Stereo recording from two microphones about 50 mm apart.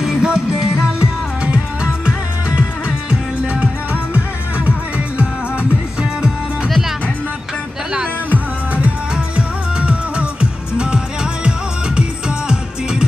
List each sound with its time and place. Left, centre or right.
0.0 s music: centre
8.3 s music: right